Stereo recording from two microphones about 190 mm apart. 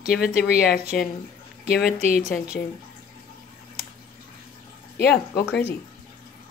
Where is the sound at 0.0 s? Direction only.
50° left (ahead or behind).